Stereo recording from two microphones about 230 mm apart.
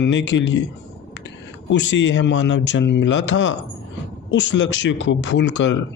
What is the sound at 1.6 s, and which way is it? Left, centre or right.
Speech, left.